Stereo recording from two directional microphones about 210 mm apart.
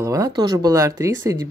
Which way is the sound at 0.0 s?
15° right (ahead or behind).